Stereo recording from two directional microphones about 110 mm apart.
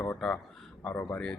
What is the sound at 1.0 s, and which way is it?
Speech, 15° left (ahead or behind).